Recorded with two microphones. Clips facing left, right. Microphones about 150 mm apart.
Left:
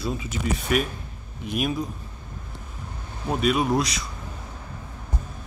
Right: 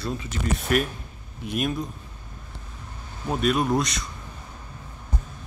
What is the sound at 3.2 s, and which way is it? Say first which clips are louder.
Speech: left 1 dB; centre (ahead or behind).